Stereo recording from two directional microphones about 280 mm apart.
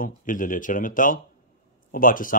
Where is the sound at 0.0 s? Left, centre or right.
Left.